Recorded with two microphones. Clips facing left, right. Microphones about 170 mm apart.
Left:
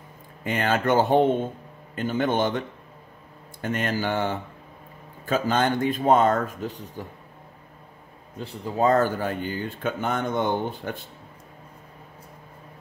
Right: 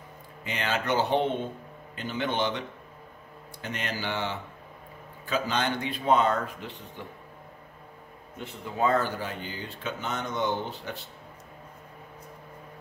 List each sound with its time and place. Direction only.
0.4 s speech: 50° left (ahead or behind)
3.6 s speech: 50° left (ahead or behind)
8.4 s speech: 35° left (ahead or behind); by 11.1 s 50° left (ahead or behind)